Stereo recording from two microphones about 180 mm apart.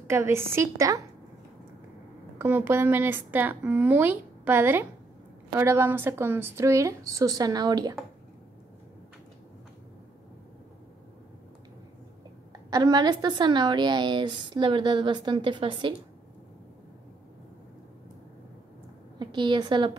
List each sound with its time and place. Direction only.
0.1 s a woman's voice: 15° right (ahead or behind)
2.3 s a woman's voice: 10° right (ahead or behind)
12.5 s a woman's voice: 20° right (ahead or behind)
19.1 s a woman's voice: 25° right (ahead or behind)